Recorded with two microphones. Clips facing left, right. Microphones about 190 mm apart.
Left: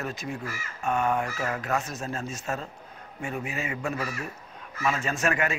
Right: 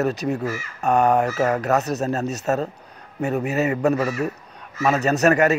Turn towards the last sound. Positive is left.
turn(degrees=-40)  # may be behind; listen again after turning